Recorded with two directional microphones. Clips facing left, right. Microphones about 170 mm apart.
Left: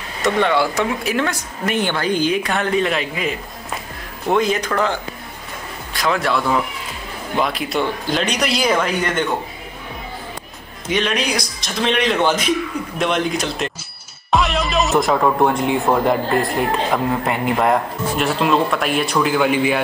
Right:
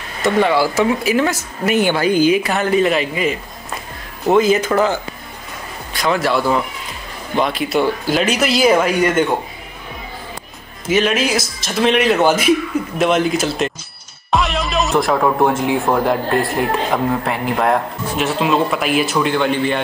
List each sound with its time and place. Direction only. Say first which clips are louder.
0.2 s speech: right 2 dB; 5° right (ahead or behind)
5.9 s speech: right 2 dB; centre (ahead or behind)
10.9 s speech: right 4 dB; 5° right (ahead or behind)